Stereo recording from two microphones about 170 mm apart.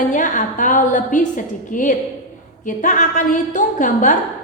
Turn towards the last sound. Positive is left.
turn(degrees=50)  # may be behind; listen again after turning